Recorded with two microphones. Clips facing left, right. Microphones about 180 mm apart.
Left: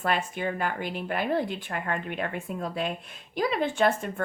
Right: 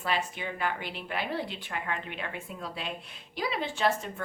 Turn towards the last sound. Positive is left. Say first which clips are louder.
# left 4 dB
turn(degrees=50)  # may be behind; listen again after turning